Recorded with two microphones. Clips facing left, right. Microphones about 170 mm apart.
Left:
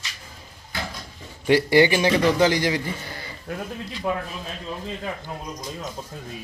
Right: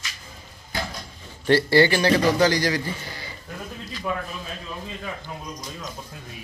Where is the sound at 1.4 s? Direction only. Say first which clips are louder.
Left 1 dB; 15° left (ahead or behind).